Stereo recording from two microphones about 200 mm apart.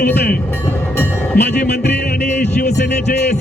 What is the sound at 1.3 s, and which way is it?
Music, 55° left (ahead or behind).